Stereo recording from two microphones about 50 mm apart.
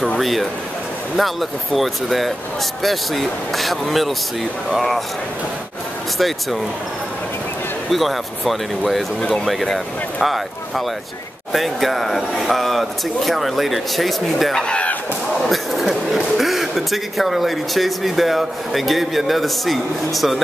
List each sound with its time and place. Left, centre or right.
0.2 s speech: centre
6.1 s speech: centre
7.9 s speech: centre
11.5 s speech: centre
14.5 s speech: centre
15.4 s a sound: centre
16.2 s speech: centre